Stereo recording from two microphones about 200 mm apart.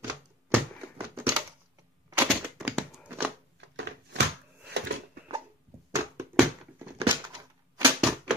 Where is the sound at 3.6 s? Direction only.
60° right (ahead or behind).